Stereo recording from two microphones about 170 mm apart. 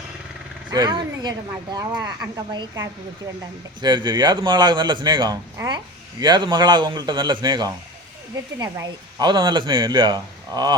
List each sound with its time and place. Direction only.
0.7 s speech: 25° right (ahead or behind)